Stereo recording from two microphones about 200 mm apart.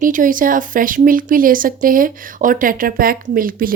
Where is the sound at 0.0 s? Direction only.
40° right (ahead or behind).